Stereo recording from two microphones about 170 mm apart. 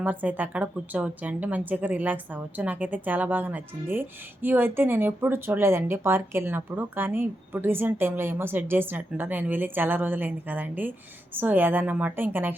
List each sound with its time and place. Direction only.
0.0 s speech: 10° right (ahead or behind)